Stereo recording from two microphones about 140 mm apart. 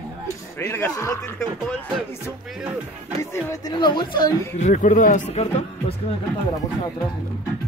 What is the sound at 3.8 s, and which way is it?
Speech, 35° left (ahead or behind).